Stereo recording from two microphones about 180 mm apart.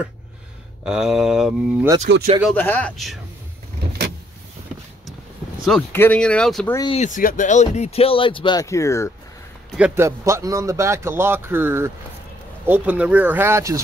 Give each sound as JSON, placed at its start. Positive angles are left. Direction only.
{"t": 0.8, "sound": "speech", "side_deg": -5}
{"t": 2.1, "sound": "speech", "side_deg": -75}
{"t": 2.5, "sound": "speech", "side_deg": 10}
{"t": 5.7, "sound": "speech", "side_deg": 5}
{"t": 6.9, "sound": "speech", "side_deg": 40}
{"t": 9.8, "sound": "speech", "side_deg": -10}